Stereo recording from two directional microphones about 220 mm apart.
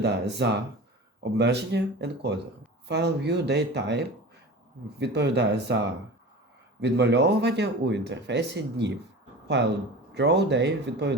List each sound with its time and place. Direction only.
0.0 s speech: 50° right (ahead or behind)
6.8 s speech: 50° right (ahead or behind)
10.2 s speech: 50° right (ahead or behind)